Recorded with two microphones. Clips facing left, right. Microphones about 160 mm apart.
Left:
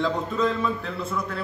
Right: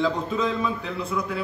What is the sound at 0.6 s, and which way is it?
Speech, centre (ahead or behind).